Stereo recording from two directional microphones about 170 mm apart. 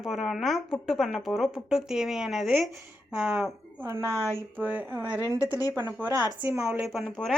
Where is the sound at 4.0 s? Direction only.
20° left (ahead or behind).